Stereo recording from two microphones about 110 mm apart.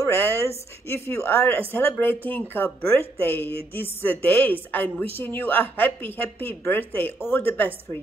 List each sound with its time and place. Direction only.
0.0 s a woman's voice: 20° left (ahead or behind)